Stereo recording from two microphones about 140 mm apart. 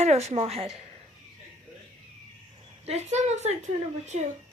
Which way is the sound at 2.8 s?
50° right (ahead or behind).